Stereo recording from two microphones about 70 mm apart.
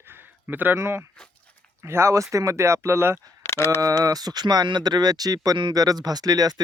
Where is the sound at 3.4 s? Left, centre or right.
Left.